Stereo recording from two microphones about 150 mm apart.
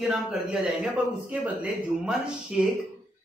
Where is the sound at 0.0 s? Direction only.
Centre (ahead or behind).